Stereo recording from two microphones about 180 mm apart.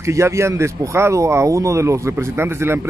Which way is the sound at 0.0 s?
15° right (ahead or behind).